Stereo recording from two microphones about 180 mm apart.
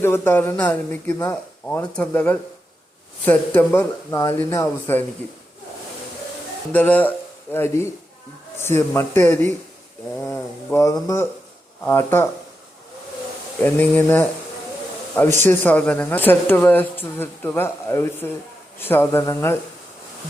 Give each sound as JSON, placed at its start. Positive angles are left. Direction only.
{"t": 0.0, "sound": "speech", "side_deg": 15}
{"t": 6.7, "sound": "speech", "side_deg": 10}
{"t": 13.6, "sound": "speech", "side_deg": 10}